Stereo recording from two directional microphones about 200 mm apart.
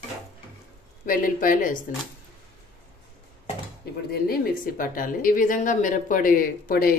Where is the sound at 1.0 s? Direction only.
45° left (ahead or behind).